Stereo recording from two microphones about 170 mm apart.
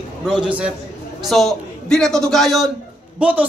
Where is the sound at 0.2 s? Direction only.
5° right (ahead or behind).